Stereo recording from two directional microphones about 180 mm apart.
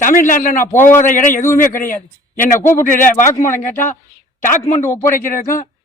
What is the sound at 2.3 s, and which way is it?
Speech, 15° left (ahead or behind).